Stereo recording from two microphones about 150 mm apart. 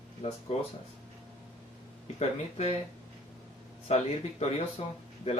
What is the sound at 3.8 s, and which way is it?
Speech, 45° left (ahead or behind).